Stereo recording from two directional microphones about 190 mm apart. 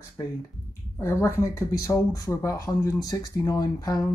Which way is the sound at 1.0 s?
15° left (ahead or behind).